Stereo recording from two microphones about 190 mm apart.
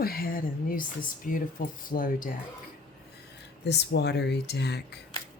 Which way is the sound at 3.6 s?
60° left (ahead or behind).